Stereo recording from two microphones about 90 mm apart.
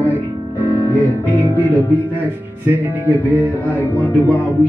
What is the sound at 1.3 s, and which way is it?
Speech, 20° left (ahead or behind).